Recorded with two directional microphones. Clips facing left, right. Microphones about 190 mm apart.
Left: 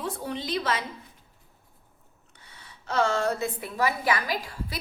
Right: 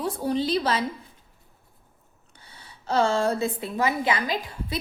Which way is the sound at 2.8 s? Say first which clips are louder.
Right 3 dB; 30° right (ahead or behind).